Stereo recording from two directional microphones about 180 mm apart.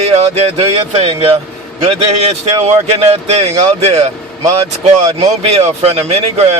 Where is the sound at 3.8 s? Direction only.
35° right (ahead or behind).